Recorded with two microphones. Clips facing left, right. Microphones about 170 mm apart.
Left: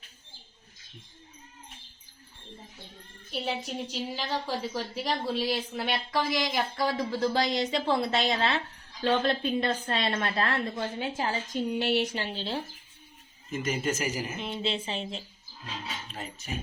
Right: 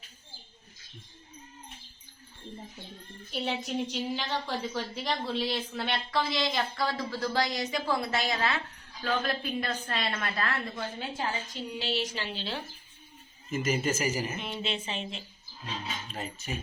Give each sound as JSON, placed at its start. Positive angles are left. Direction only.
{"t": 3.3, "sound": "a woman's voice", "side_deg": 5}
{"t": 11.4, "sound": "a woman's voice", "side_deg": 50}
{"t": 13.5, "sound": "a woman's voice", "side_deg": -5}
{"t": 14.5, "sound": "speech", "side_deg": 30}